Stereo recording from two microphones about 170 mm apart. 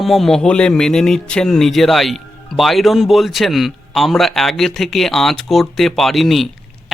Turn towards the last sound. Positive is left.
turn(degrees=0)  # may be behind; listen again after turning